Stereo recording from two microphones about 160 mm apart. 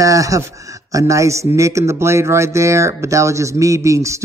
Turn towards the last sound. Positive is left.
turn(degrees=-20)  # may be behind; listen again after turning